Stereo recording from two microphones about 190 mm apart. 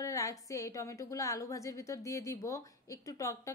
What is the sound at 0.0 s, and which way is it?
A woman's voice, 15° left (ahead or behind).